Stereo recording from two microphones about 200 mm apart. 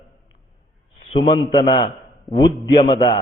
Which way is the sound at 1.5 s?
25° left (ahead or behind).